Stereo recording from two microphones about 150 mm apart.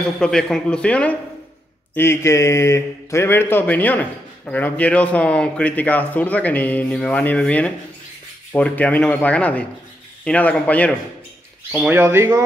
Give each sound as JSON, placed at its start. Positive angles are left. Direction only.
{"t": 0.2, "sound": "speech", "side_deg": 5}
{"t": 2.0, "sound": "speech", "side_deg": 15}
{"t": 11.7, "sound": "speech", "side_deg": -10}